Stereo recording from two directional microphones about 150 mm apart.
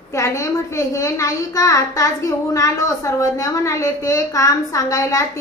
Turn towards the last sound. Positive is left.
turn(degrees=20)  # may be behind; listen again after turning